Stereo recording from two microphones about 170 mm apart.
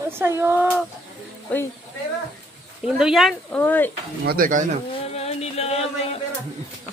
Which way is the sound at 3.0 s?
Centre (ahead or behind).